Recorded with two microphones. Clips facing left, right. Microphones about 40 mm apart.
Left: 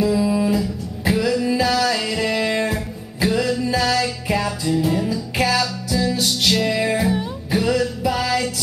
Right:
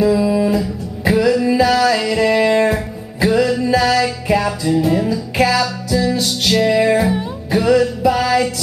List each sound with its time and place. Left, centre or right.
0.0 s music: centre